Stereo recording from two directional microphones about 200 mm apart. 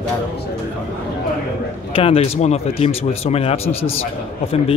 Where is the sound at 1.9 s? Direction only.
30° left (ahead or behind).